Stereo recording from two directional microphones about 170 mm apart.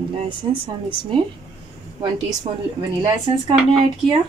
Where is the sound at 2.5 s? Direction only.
25° right (ahead or behind).